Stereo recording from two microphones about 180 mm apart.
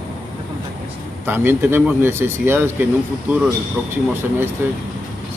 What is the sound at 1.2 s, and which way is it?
Speech, 10° right (ahead or behind).